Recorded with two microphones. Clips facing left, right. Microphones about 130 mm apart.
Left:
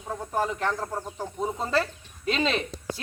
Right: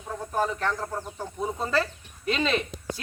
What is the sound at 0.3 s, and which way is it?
Speech, 15° left (ahead or behind).